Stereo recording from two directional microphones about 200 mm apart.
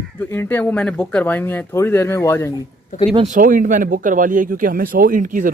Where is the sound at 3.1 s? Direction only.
30° right (ahead or behind).